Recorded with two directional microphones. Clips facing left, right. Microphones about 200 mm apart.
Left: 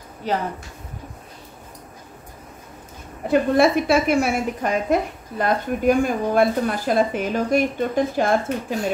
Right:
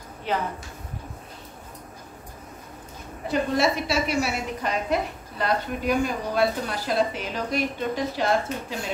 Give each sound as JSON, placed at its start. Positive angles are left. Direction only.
{"t": 0.3, "sound": "speech", "side_deg": 40}
{"t": 3.3, "sound": "speech", "side_deg": 55}